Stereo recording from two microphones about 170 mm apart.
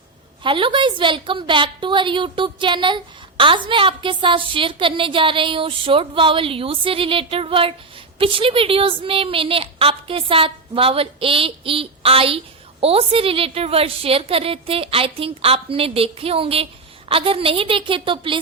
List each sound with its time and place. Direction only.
0.4 s a woman's voice: 30° right (ahead or behind)